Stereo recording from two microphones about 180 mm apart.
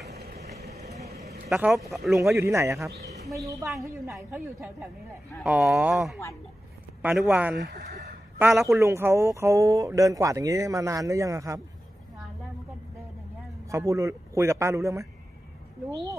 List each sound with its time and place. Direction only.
0.1 s vehicle: 60° right (ahead or behind)
0.7 s vehicle: 35° right (ahead or behind)
1.5 s speech: centre (ahead or behind)
2.1 s speech: 15° right (ahead or behind)
13.7 s a man's voice: 15° right (ahead or behind)